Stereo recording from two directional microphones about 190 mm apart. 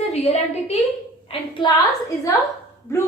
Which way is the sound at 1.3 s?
25° left (ahead or behind).